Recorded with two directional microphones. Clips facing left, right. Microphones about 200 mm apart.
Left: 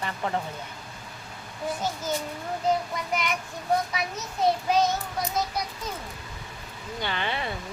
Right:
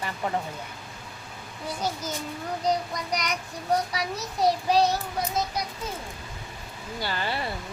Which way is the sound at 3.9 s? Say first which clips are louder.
Right 1 dB; 35° right (ahead or behind).